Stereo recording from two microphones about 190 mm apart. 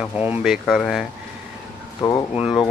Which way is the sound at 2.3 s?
30° left (ahead or behind).